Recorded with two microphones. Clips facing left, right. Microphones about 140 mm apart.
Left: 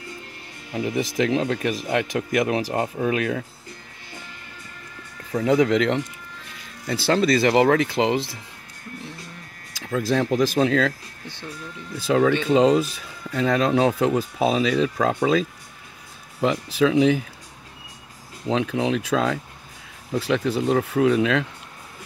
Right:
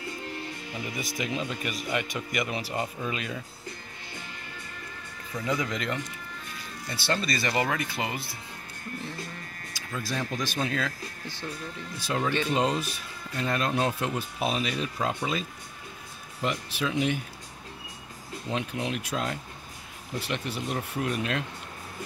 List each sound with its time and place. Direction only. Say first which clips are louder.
0.7 s speech: left 12 dB; 75° left (ahead or behind)
5.3 s speech: left 12 dB; 70° left (ahead or behind)
6.9 s speech: left 10 dB; 90° left
9.8 s speech: left 11 dB; 90° left
12.1 s speech: left 11 dB; 90° left
13.3 s speech: left 8 dB; 90° left
18.5 s speech: left 9 dB; 90° left